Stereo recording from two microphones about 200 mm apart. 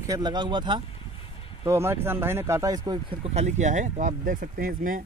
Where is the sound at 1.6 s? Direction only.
10° right (ahead or behind).